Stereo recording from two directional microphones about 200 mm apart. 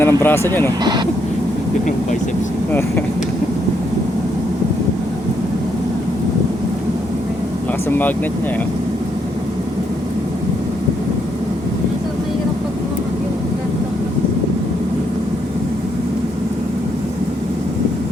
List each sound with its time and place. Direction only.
0.0 s speech: 10° left (ahead or behind)
7.9 s speech: 10° left (ahead or behind)